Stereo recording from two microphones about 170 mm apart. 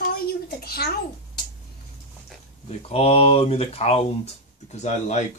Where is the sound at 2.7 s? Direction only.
35° left (ahead or behind).